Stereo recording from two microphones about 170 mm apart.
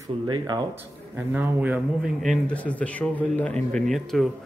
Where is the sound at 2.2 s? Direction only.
5° left (ahead or behind).